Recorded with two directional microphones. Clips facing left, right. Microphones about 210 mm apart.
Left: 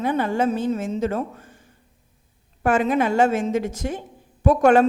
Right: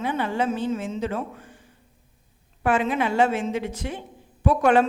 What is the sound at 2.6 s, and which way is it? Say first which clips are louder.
A woman's voice: left 3 dB; 45° left (ahead or behind).